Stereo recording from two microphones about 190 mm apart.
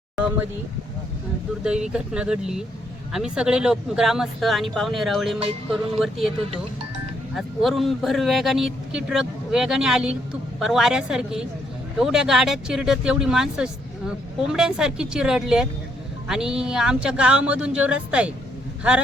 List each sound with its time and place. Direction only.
1.6 s a man's voice: 5° right (ahead or behind)
5.4 s music: 30° right (ahead or behind)
6.0 s a man's voice: centre (ahead or behind)
7.3 s a man's voice: centre (ahead or behind)